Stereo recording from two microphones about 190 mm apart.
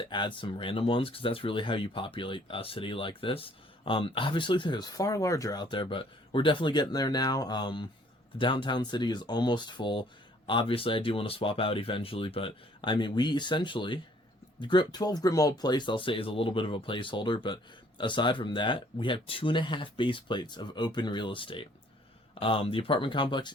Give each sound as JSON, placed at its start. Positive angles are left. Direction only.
{"t": 0.1, "sound": "speech", "side_deg": 25}